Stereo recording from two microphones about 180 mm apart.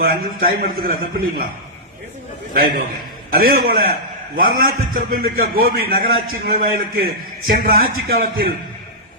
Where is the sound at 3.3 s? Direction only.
55° right (ahead or behind).